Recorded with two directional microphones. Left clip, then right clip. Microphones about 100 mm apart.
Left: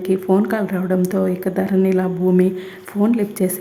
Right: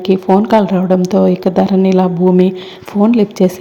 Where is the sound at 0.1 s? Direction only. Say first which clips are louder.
Right 8 dB; 20° right (ahead or behind).